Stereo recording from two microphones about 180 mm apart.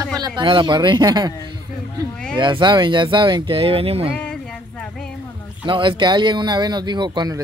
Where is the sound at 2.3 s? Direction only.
25° right (ahead or behind).